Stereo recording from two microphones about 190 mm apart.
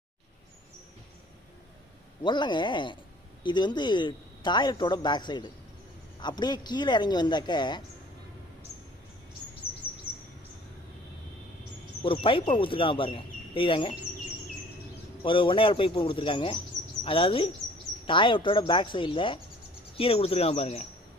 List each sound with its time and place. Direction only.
2.2 s speech: 25° left (ahead or behind)
12.0 s speech: 30° left (ahead or behind)
15.2 s speech: 25° left (ahead or behind)